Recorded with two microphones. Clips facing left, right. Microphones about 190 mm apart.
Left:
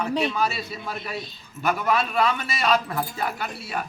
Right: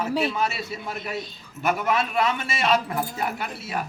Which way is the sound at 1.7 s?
20° right (ahead or behind).